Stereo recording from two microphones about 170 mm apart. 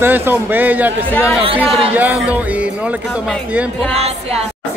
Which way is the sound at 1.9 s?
10° right (ahead or behind).